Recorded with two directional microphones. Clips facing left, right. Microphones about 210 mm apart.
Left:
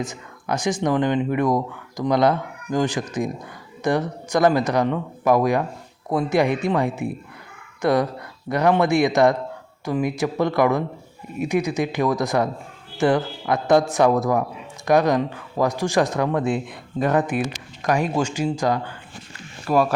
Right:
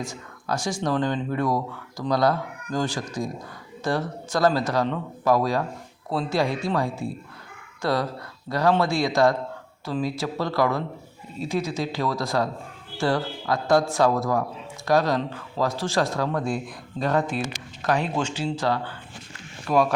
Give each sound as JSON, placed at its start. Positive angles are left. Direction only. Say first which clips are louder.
{"t": 0.0, "sound": "speech", "louder": "left 4 dB", "side_deg": 20}
{"t": 19.6, "sound": "speech", "louder": "left 2 dB", "side_deg": 5}